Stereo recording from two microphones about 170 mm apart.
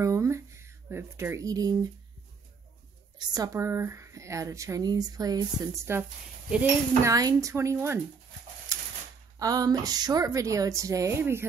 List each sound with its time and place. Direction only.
0.0 s speech: 15° right (ahead or behind)
3.2 s speech: 20° right (ahead or behind)
8.7 s a sound: 20° right (ahead or behind)
9.4 s speech: 20° right (ahead or behind)